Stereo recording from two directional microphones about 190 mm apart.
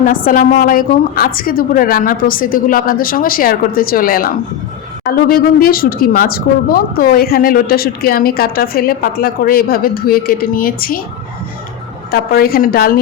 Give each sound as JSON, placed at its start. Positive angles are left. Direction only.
{"t": 0.0, "sound": "speech", "side_deg": 45}
{"t": 12.1, "sound": "speech", "side_deg": 50}